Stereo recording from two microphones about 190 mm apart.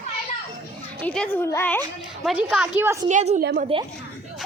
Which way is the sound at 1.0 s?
5° left (ahead or behind).